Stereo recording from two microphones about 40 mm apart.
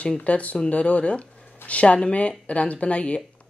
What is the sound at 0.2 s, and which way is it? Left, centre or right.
Speech, left.